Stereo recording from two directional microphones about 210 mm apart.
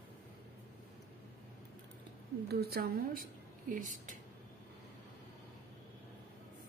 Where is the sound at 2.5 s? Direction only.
50° right (ahead or behind).